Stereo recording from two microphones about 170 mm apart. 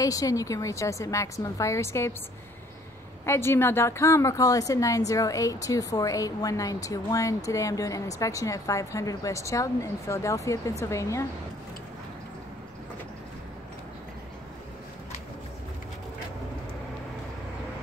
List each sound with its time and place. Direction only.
0.0 s a woman's voice: 20° left (ahead or behind)
3.3 s a woman's voice: 15° left (ahead or behind)